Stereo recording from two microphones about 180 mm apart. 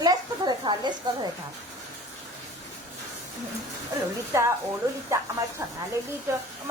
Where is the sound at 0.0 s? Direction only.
25° right (ahead or behind).